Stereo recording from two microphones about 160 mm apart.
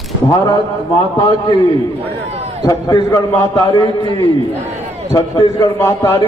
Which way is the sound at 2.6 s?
20° left (ahead or behind).